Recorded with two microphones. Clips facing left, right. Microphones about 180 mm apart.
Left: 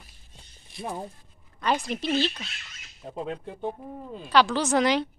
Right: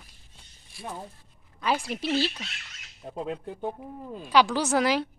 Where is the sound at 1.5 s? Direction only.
5° right (ahead or behind).